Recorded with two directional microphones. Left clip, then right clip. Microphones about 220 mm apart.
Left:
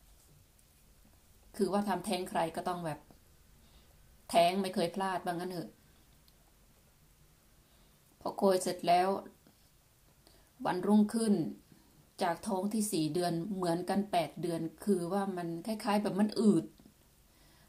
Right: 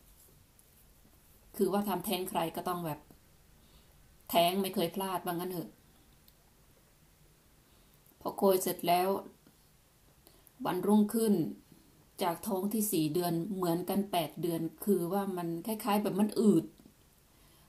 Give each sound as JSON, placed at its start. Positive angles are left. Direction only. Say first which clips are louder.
{"t": 1.5, "sound": "a woman's voice", "louder": "right 1 dB", "side_deg": 0}
{"t": 4.3, "sound": "a woman's voice", "louder": "left 1 dB", "side_deg": 0}
{"t": 8.2, "sound": "a woman's voice", "louder": "right 1 dB", "side_deg": 0}
{"t": 10.6, "sound": "a woman's voice", "louder": "right 1 dB", "side_deg": 0}